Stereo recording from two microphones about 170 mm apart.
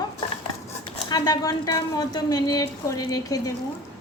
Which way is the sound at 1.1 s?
25° left (ahead or behind).